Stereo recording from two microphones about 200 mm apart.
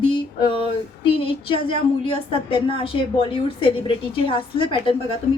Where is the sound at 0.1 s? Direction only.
25° left (ahead or behind).